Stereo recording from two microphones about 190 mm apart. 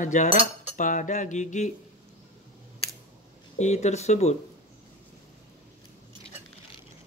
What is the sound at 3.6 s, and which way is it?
Cutlery, 35° left (ahead or behind).